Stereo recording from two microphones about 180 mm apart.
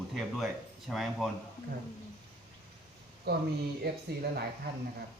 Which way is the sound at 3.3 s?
60° right (ahead or behind).